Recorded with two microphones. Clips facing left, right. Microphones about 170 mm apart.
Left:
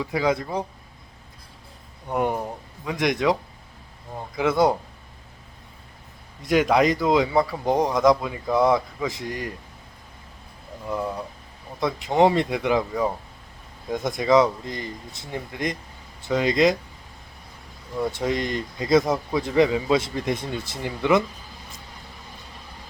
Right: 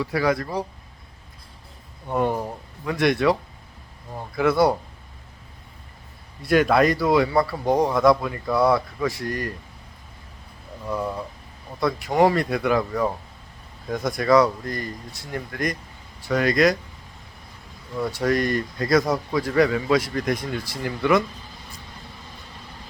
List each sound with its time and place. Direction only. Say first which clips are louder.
0.0 s a man's voice: right 1 dB; 20° left (ahead or behind)
2.1 s speech: right 1 dB; 15° left (ahead or behind)
4.4 s a man's voice: right 1 dB; 20° left (ahead or behind)
6.4 s a man's voice: right 1 dB; 15° left (ahead or behind)
10.9 s speech: even; centre (ahead or behind)
11.9 s a man's voice: left 1 dB; 20° left (ahead or behind)
12.9 s speech: right 1 dB; 5° left (ahead or behind)
13.9 s a man's voice: right 1 dB; 20° left (ahead or behind)
17.9 s a man's voice: right 2 dB; 15° left (ahead or behind)